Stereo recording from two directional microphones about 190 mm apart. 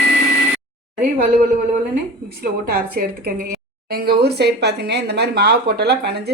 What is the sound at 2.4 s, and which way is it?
A woman's voice, 55° right (ahead or behind).